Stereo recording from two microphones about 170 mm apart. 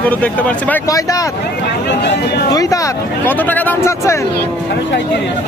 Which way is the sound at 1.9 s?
85° left.